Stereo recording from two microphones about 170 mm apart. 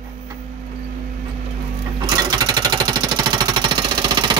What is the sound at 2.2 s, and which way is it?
Jackhammer, 25° right (ahead or behind).